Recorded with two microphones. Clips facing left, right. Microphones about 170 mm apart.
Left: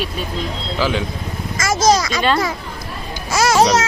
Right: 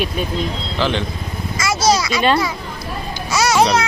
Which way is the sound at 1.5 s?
45° left (ahead or behind).